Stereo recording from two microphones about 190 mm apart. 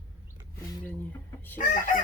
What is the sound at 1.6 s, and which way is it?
Chicken, 45° left (ahead or behind).